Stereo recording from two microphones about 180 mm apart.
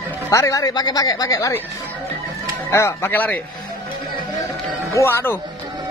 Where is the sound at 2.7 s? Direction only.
15° left (ahead or behind).